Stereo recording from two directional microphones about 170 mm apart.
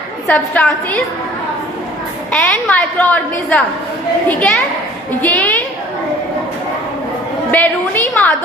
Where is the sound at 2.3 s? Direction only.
5° left (ahead or behind).